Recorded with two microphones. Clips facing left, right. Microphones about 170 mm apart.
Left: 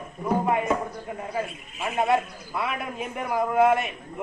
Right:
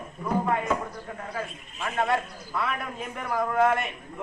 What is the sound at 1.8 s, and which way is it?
A man's voice, 10° left (ahead or behind).